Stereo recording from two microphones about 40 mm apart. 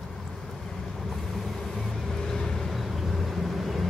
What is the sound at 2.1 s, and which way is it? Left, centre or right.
Vehicle, centre.